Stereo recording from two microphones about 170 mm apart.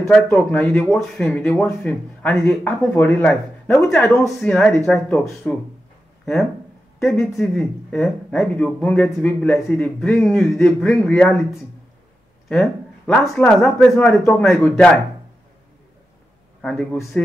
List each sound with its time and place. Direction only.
0.1 s a man's voice: 5° left (ahead or behind)
7.3 s speech: 5° left (ahead or behind)
12.4 s a sound: 5° left (ahead or behind)
13.5 s a man's voice: centre (ahead or behind)
16.6 s a man's voice: 5° left (ahead or behind)